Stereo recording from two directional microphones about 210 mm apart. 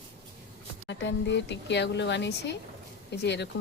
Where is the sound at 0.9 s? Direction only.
60° left (ahead or behind).